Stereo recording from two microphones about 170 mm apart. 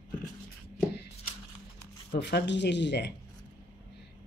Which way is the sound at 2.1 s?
85° left.